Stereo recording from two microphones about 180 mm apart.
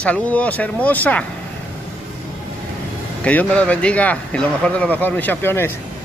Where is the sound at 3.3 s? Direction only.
5° left (ahead or behind).